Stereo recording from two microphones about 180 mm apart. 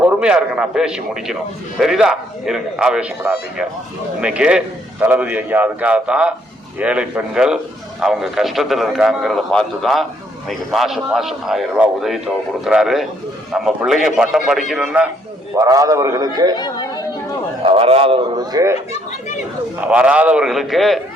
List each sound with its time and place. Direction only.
0.0 s a man's voice: 5° right (ahead or behind)
15.5 s a man's voice: 20° right (ahead or behind)
16.6 s chatter: 25° left (ahead or behind)
17.6 s a man's voice: 30° right (ahead or behind)
19.8 s a man's voice: 5° right (ahead or behind)